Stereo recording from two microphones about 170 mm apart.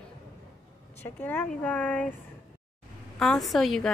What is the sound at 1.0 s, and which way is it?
Speech, 10° left (ahead or behind).